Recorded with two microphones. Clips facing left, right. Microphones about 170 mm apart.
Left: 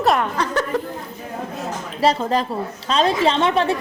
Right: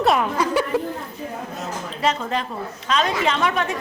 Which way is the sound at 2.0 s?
35° left (ahead or behind).